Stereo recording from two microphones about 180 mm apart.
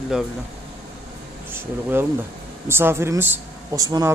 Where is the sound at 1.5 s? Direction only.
10° right (ahead or behind).